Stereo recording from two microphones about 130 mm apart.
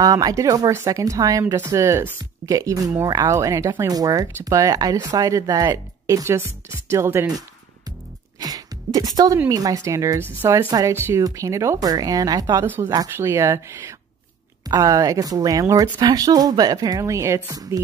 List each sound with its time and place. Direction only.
0.0 s speech: 30° right (ahead or behind)
8.4 s music: 30° right (ahead or behind)
9.5 s a woman's voice: 25° right (ahead or behind)
10.7 s speech: 30° right (ahead or behind)
11.0 s a woman's voice: 20° right (ahead or behind)